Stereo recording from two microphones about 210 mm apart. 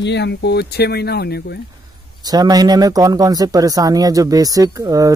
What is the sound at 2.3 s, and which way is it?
Speech, 20° right (ahead or behind).